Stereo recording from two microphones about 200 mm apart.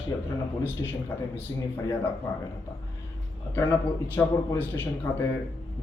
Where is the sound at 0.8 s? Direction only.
20° left (ahead or behind).